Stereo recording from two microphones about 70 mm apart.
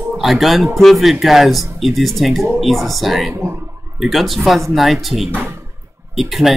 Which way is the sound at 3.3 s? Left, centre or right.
Right.